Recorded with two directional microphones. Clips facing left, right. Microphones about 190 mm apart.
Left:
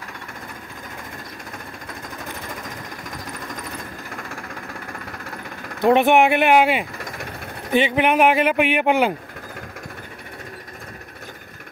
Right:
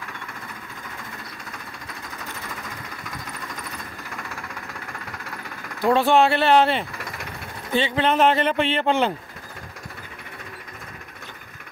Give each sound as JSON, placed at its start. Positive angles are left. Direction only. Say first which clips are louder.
{"t": 5.8, "sound": "speech", "louder": "left 3 dB", "side_deg": 20}